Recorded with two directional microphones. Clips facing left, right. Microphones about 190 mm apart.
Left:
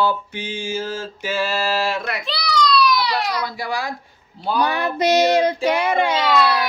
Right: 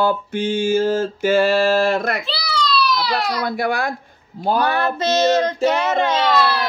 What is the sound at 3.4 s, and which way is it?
Speech, 55° right (ahead or behind).